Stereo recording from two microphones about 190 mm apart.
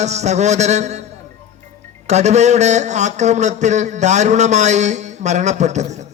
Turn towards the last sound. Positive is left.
turn(degrees=-35)  # may be behind; listen again after turning